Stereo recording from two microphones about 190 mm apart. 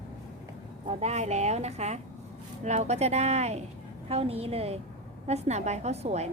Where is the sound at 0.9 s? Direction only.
35° right (ahead or behind).